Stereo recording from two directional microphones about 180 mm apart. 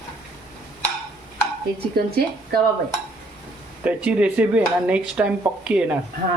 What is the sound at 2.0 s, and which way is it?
Speech, 60° right (ahead or behind).